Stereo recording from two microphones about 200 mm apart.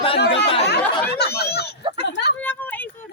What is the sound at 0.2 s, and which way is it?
Chatter, 60° left (ahead or behind).